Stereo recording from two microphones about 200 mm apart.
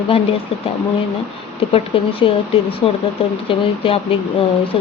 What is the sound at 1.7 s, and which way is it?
Speech, 30° left (ahead or behind).